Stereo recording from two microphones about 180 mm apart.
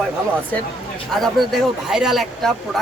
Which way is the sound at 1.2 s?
Centre (ahead or behind).